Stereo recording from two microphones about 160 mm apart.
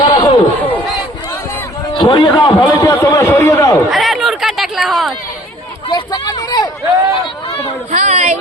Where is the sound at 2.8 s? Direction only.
20° left (ahead or behind).